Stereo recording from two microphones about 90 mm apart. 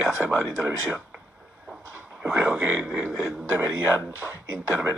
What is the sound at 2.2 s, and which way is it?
Speech, 20° right (ahead or behind).